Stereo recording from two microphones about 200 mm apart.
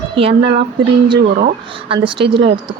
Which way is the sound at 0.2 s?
30° right (ahead or behind).